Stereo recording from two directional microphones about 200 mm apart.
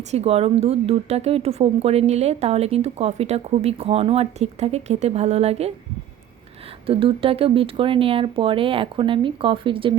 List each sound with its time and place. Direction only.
0.1 s speech: 30° right (ahead or behind)
6.8 s speech: 30° right (ahead or behind)